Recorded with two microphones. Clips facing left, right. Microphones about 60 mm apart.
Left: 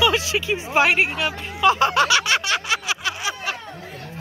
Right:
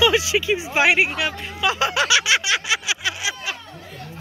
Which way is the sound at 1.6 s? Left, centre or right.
Left.